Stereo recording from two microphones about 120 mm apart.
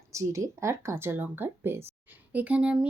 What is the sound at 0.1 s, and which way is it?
Speech, 25° right (ahead or behind).